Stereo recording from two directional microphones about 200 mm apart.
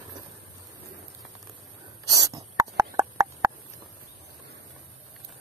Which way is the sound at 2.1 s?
15° right (ahead or behind).